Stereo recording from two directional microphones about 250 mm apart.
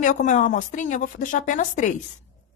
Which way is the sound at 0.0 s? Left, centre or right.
Left.